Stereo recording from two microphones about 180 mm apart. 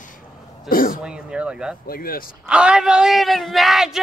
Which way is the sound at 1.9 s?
55° left (ahead or behind).